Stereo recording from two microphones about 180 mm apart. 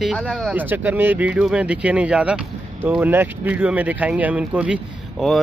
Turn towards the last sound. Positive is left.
turn(degrees=-5)  # may be behind; listen again after turning